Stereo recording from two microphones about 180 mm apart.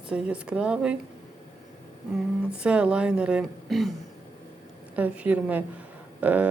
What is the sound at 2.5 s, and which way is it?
A woman's voice, 5° right (ahead or behind).